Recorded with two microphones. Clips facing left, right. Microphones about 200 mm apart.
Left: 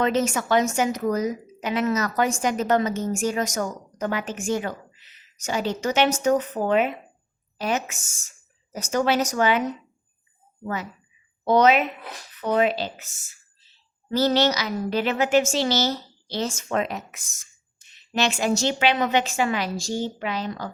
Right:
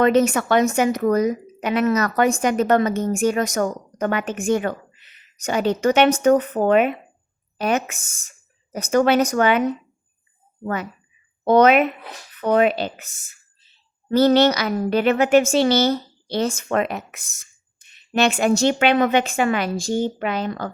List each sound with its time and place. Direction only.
0.0 s a woman's voice: 60° right (ahead or behind)